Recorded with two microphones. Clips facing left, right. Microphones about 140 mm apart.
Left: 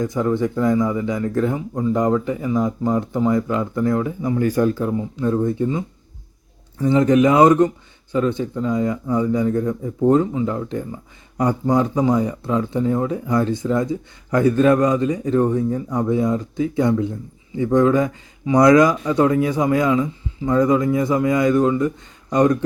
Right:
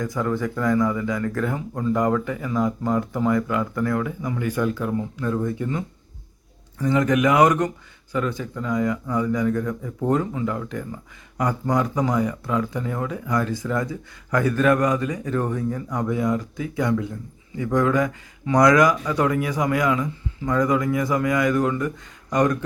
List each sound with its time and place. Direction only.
0.0 s speech: 25° left (ahead or behind)